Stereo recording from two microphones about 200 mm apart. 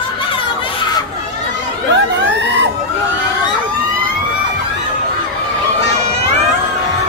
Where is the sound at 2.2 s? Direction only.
60° right (ahead or behind).